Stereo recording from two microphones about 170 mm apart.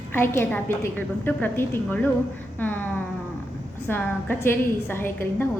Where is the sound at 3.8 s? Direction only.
10° left (ahead or behind).